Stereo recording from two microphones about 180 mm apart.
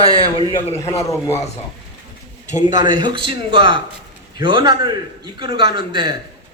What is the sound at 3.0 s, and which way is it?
A man's voice, 25° right (ahead or behind).